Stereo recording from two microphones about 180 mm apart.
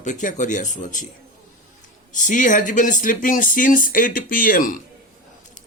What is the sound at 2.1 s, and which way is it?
Speech, 45° left (ahead or behind).